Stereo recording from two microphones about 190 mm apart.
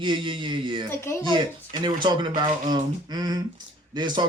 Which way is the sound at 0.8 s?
15° left (ahead or behind).